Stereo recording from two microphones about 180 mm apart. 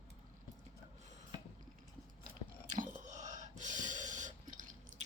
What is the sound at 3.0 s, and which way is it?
Drip, 45° right (ahead or behind).